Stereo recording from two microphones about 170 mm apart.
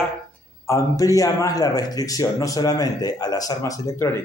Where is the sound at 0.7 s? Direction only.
20° left (ahead or behind).